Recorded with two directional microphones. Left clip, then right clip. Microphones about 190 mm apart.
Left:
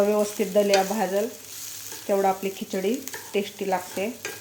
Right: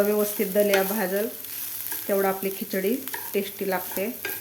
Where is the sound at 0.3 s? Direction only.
5° right (ahead or behind).